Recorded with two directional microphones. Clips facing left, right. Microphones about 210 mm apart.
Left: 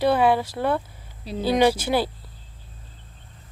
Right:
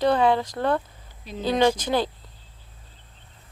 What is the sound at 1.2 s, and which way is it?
Speech, 35° left (ahead or behind).